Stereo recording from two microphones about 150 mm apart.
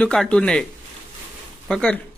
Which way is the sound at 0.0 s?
5° left (ahead or behind).